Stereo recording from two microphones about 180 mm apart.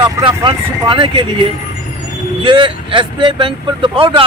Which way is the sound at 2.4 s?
25° right (ahead or behind).